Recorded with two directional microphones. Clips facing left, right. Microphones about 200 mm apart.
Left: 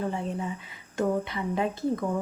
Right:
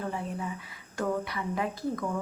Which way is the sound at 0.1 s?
25° left (ahead or behind).